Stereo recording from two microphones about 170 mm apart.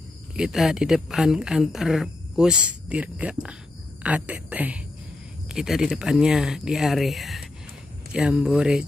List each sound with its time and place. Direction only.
0.4 s speech: centre (ahead or behind)